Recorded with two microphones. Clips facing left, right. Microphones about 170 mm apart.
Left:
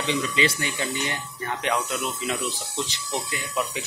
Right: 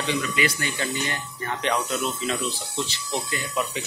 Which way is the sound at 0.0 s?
20° left (ahead or behind).